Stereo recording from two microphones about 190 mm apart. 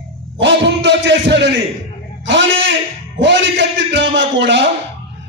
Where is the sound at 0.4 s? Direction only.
65° right (ahead or behind).